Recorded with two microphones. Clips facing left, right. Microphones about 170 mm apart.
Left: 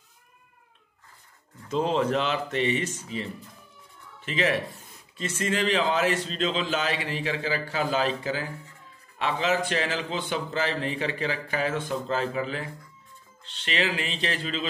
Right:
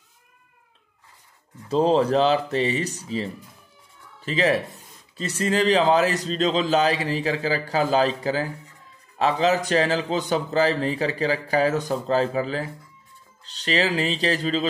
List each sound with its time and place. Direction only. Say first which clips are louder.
1.7 s a man's voice: right 6 dB; 35° right (ahead or behind)